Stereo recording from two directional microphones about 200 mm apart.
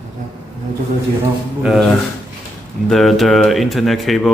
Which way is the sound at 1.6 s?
Centre (ahead or behind).